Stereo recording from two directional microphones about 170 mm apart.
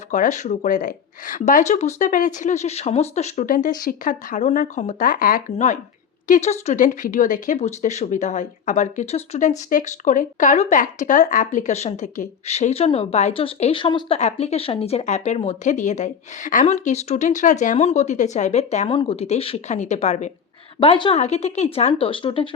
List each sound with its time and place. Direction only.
0.1 s speech: 45° left (ahead or behind)
20.7 s speech: 30° left (ahead or behind)